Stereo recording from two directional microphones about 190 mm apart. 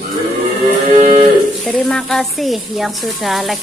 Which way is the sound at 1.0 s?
40° right (ahead or behind).